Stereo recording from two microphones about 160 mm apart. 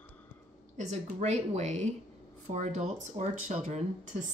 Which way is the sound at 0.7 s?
45° right (ahead or behind).